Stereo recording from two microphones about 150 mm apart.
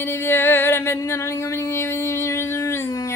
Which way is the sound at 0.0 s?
15° left (ahead or behind).